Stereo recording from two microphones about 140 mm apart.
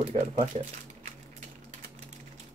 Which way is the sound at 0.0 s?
50° right (ahead or behind).